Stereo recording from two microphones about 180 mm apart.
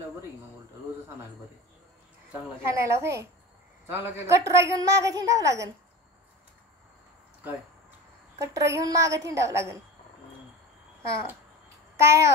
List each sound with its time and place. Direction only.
2.7 s a woman's voice: 15° right (ahead or behind)
8.4 s a woman's voice: 15° right (ahead or behind)
11.0 s a child's voice: 15° right (ahead or behind)